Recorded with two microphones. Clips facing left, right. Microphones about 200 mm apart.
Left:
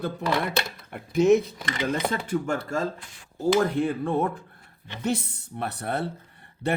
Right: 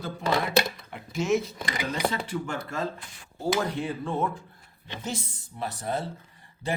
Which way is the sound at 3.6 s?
55° left (ahead or behind).